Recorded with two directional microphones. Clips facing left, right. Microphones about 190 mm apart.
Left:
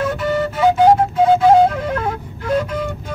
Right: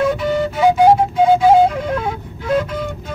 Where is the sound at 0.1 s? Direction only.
Centre (ahead or behind).